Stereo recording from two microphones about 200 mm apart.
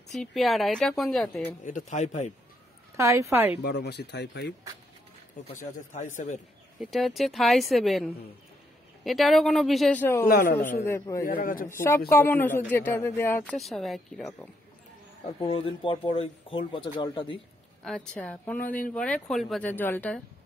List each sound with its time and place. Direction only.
0.1 s speech: centre (ahead or behind)
1.6 s speech: 35° left (ahead or behind)
3.0 s a woman's voice: 15° right (ahead or behind)
3.6 s speech: 55° left (ahead or behind)
6.1 s speech: 40° left (ahead or behind)
6.8 s speech: centre (ahead or behind)
10.2 s speech: 50° left (ahead or behind)
10.6 s a man's voice: 10° left (ahead or behind)
11.2 s speech: 45° left (ahead or behind)
11.7 s a man's voice: 10° left (ahead or behind)
15.4 s speech: 25° left (ahead or behind)
17.8 s a man's voice: 5° left (ahead or behind)